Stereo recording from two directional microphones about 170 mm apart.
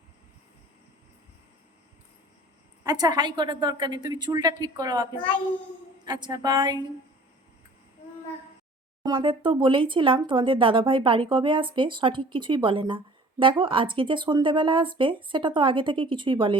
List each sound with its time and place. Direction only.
2.8 s speech: 20° right (ahead or behind)
6.1 s speech: 25° right (ahead or behind)
9.0 s speech: 30° right (ahead or behind)